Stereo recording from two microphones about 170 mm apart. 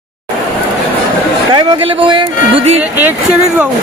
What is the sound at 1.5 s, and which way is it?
Speech, 30° right (ahead or behind).